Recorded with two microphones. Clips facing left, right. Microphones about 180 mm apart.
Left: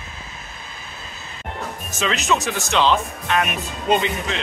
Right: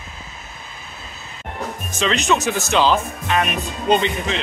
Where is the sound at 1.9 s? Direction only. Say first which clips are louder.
Right 2 dB; 5° left (ahead or behind).